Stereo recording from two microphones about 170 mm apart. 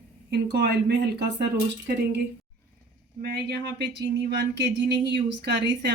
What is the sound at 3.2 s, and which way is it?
Speech, 70° right (ahead or behind).